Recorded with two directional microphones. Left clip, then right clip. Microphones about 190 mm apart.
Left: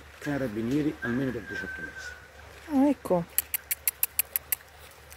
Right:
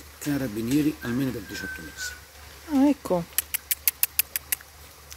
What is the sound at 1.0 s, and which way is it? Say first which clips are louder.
Speech: right 1 dB; 55° right (ahead or behind).